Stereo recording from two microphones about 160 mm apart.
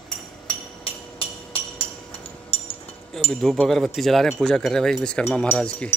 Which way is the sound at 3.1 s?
Centre (ahead or behind).